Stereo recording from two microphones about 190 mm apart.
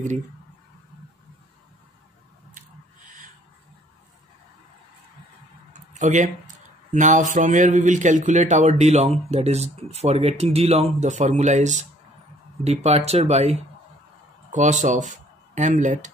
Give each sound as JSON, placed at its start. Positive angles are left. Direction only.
{"t": 5.7, "sound": "tick-tock", "side_deg": -40}
{"t": 6.9, "sound": "speech", "side_deg": -40}